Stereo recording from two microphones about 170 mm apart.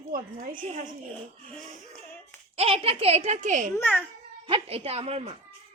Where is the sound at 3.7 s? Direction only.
10° left (ahead or behind).